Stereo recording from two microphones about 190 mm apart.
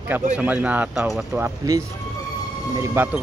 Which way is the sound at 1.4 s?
20° right (ahead or behind).